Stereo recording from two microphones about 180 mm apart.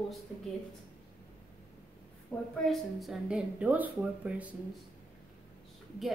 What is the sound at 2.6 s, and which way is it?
A woman's voice, centre (ahead or behind).